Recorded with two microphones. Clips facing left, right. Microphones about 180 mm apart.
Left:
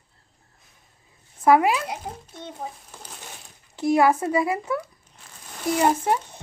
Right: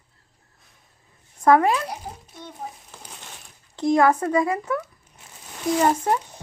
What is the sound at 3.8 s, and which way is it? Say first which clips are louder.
A child's voice: right 1 dB; 10° left (ahead or behind).